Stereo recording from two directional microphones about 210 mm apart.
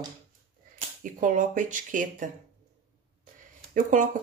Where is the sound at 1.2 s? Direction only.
40° right (ahead or behind).